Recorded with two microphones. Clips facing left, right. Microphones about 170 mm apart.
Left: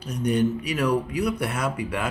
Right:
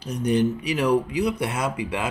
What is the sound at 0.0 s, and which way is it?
Speech, 30° right (ahead or behind).